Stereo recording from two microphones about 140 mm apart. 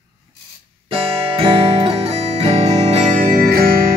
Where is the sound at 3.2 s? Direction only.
90° right.